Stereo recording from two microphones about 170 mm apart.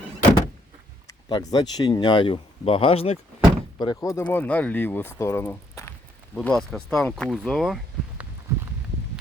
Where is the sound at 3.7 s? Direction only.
20° left (ahead or behind).